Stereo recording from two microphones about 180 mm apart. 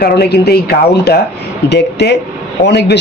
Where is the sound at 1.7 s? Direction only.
70° left (ahead or behind).